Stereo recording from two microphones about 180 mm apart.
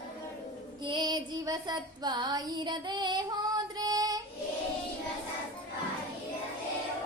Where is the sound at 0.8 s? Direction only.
25° right (ahead or behind).